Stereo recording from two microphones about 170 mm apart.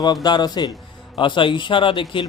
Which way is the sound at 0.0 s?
25° left (ahead or behind).